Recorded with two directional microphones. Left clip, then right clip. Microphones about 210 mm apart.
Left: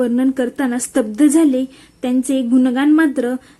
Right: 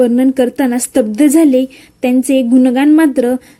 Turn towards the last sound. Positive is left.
turn(degrees=-15)  # may be behind; listen again after turning